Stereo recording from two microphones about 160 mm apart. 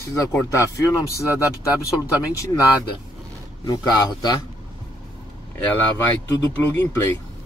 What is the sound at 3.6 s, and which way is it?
Speech, 25° left (ahead or behind).